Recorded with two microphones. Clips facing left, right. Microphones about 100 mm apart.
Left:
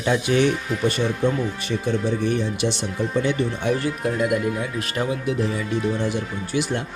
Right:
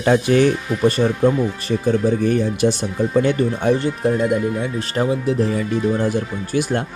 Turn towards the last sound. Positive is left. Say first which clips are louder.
# right 4 dB
turn(degrees=-45)  # may be behind; listen again after turning